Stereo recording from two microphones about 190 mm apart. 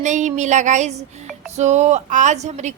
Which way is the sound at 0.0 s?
40° right (ahead or behind).